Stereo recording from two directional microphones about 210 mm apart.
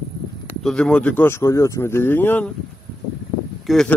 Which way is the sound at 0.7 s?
5° left (ahead or behind).